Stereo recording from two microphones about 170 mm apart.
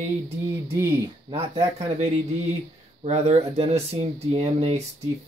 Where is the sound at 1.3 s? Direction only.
35° right (ahead or behind).